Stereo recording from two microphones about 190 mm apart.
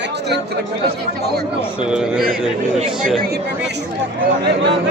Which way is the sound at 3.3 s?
65° right (ahead or behind).